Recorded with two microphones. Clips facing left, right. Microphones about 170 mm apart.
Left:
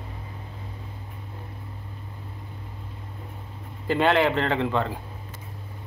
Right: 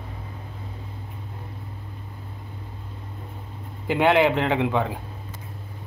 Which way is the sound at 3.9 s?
15° right (ahead or behind).